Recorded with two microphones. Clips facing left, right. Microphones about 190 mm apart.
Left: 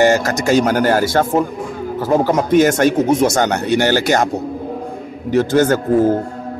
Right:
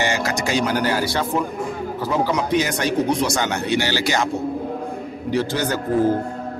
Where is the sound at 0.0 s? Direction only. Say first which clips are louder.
Left 8 dB; 45° left (ahead or behind).